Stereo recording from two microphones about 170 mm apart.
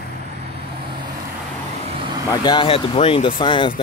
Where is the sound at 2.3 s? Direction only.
25° left (ahead or behind).